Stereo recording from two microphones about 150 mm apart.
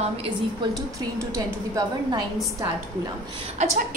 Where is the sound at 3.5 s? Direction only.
50° right (ahead or behind).